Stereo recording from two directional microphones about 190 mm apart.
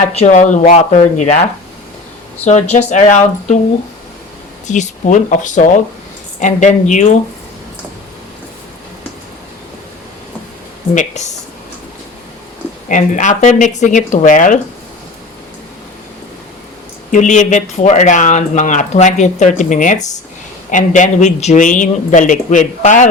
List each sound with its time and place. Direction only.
0.0 s speech: 40° left (ahead or behind)
2.4 s speech: 35° left (ahead or behind)
4.6 s speech: 40° left (ahead or behind)
10.9 s speech: 40° left (ahead or behind)
12.9 s speech: 40° left (ahead or behind)
17.1 s speech: 40° left (ahead or behind)